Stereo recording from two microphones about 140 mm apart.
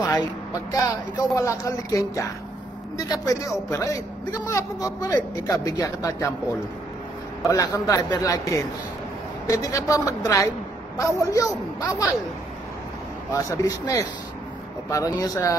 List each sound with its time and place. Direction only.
0.7 s a man's voice: 25° left (ahead or behind)
7.4 s a man's voice: 25° left (ahead or behind)
13.3 s a man's voice: 25° left (ahead or behind)